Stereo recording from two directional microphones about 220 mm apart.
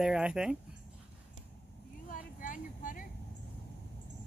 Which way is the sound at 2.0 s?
40° left (ahead or behind).